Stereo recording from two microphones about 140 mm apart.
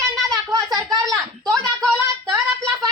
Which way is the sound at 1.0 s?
Centre (ahead or behind).